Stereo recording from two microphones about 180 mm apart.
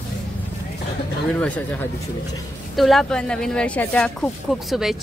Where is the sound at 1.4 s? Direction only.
10° left (ahead or behind).